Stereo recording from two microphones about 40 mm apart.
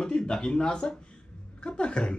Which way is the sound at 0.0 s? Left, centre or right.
Centre.